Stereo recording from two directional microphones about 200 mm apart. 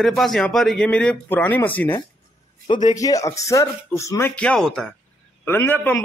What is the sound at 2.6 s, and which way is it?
A man's voice, 25° left (ahead or behind).